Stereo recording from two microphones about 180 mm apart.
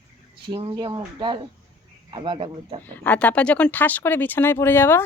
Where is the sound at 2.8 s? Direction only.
10° left (ahead or behind).